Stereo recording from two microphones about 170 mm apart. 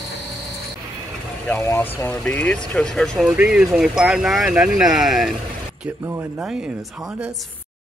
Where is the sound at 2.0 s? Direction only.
5° left (ahead or behind).